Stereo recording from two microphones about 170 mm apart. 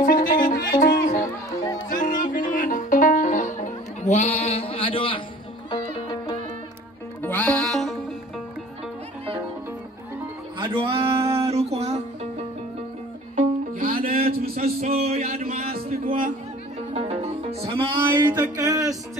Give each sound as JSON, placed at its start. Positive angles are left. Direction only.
{"t": 0.0, "sound": "music", "side_deg": 55}
{"t": 7.2, "sound": "music", "side_deg": 10}
{"t": 10.6, "sound": "music", "side_deg": -30}
{"t": 13.4, "sound": "music", "side_deg": -55}
{"t": 14.3, "sound": "a sound", "side_deg": -60}
{"t": 15.0, "sound": "a sound", "side_deg": -40}
{"t": 16.9, "sound": "music", "side_deg": -35}